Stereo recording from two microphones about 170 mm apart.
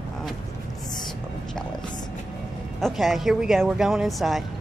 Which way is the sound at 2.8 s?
Centre (ahead or behind).